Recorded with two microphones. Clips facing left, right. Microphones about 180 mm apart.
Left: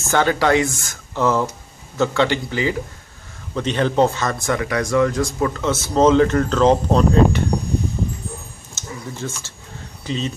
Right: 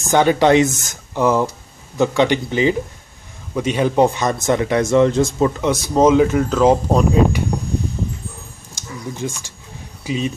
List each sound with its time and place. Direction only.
0.0 s speech: 15° right (ahead or behind)
8.7 s a sound: 15° right (ahead or behind)
10.0 s speech: 10° right (ahead or behind)